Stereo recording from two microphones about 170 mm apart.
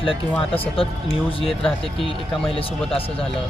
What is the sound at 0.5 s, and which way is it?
Speech, 35° left (ahead or behind).